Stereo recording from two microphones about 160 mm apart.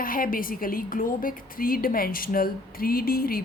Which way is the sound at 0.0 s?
60° left (ahead or behind).